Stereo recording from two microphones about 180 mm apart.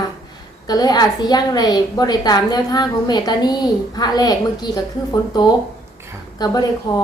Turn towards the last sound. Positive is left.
turn(degrees=20)  # may be behind; listen again after turning